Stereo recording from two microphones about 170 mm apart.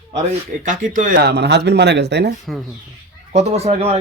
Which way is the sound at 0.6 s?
50° right (ahead or behind).